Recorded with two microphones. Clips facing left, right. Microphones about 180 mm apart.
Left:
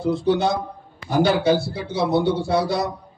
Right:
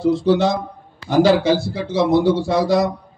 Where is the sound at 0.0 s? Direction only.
90° right.